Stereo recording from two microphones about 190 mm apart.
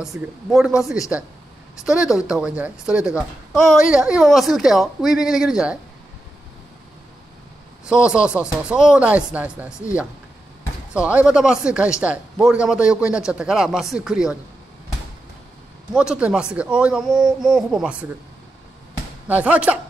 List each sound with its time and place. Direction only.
0.0 s a man's voice: centre (ahead or behind)
7.8 s a man's voice: 5° right (ahead or behind)
15.9 s a man's voice: 5° right (ahead or behind)
19.2 s speech: 10° right (ahead or behind)